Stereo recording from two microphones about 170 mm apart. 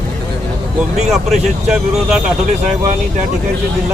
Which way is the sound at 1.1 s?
Centre (ahead or behind).